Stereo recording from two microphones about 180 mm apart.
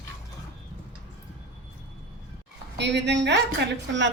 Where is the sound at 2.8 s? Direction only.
75° right (ahead or behind).